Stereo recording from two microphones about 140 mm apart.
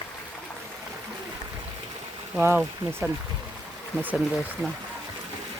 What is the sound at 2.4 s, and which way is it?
Speech, 15° right (ahead or behind).